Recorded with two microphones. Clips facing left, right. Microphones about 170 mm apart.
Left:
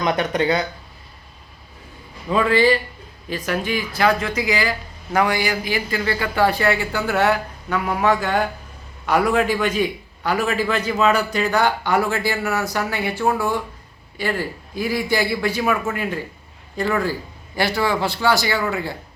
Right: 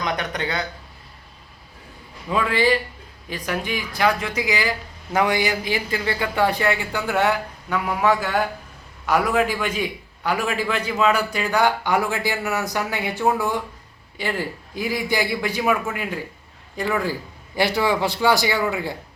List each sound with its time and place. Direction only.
0.0 s speech: 25° left (ahead or behind)
2.3 s a man's voice: 15° right (ahead or behind)